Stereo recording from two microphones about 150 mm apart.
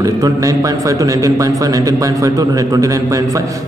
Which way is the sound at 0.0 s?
25° right (ahead or behind).